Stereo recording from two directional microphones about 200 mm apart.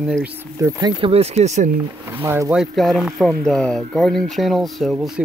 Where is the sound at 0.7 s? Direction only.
25° right (ahead or behind).